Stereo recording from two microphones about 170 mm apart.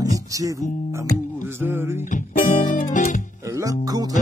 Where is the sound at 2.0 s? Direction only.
50° left (ahead or behind).